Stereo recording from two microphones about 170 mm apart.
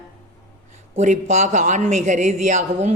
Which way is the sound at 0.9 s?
45° right (ahead or behind).